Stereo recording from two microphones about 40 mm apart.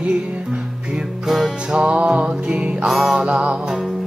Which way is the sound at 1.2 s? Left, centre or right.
Centre.